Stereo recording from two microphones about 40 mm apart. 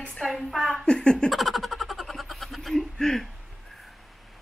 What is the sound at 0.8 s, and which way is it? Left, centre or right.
Speech, left.